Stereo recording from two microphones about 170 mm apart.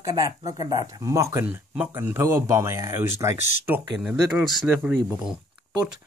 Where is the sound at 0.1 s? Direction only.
20° right (ahead or behind).